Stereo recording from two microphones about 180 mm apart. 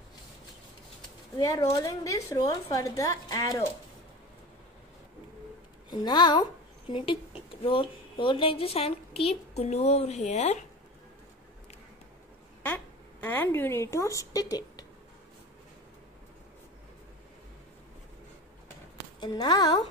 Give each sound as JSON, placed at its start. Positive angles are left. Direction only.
{"t": 1.4, "sound": "a woman's voice", "side_deg": 20}
{"t": 5.9, "sound": "a woman's voice", "side_deg": 25}
{"t": 12.6, "sound": "speech", "side_deg": 10}
{"t": 19.1, "sound": "speech", "side_deg": 25}